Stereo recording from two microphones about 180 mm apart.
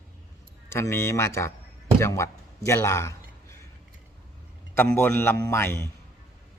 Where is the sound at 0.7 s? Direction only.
15° left (ahead or behind).